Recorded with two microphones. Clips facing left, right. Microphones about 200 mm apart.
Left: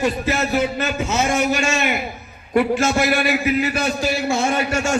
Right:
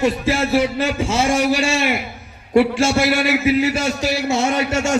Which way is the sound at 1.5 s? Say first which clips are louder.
Right 2 dB; 30° right (ahead or behind).